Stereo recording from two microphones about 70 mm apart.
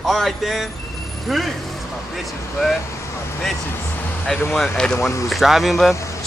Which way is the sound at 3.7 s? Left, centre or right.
Left.